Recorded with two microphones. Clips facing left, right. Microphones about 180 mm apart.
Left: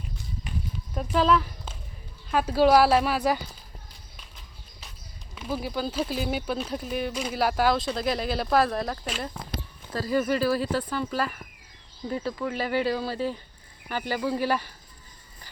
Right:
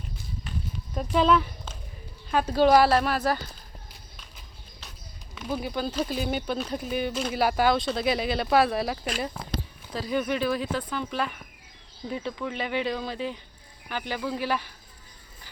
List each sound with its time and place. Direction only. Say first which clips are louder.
0.9 s a woman's voice: right 1 dB; centre (ahead or behind)
5.3 s speech: even; 5° left (ahead or behind)
13.1 s speech: left 3 dB; 15° right (ahead or behind)
13.8 s a woman's voice: left 3 dB; 10° left (ahead or behind)